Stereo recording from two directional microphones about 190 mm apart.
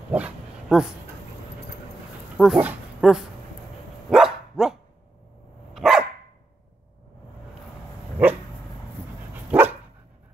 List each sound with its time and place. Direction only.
0.1 s dog: 5° right (ahead or behind)
2.3 s speech: centre (ahead or behind)
4.1 s dog: 5° right (ahead or behind)
5.8 s dog: centre (ahead or behind)
8.2 s dog: 10° right (ahead or behind)
9.5 s dog: 10° right (ahead or behind)